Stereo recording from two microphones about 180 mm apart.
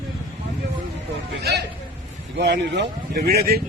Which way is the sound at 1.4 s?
65° right (ahead or behind).